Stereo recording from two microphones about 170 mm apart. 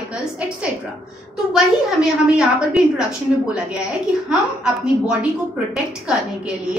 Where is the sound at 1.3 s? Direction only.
5° right (ahead or behind).